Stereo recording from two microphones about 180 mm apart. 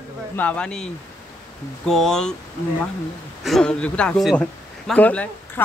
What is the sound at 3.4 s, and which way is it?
Speech, 5° left (ahead or behind).